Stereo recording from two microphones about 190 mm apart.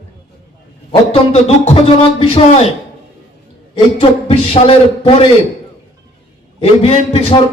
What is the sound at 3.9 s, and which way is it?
Speech, 35° left (ahead or behind).